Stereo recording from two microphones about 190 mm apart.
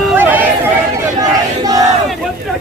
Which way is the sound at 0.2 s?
10° right (ahead or behind).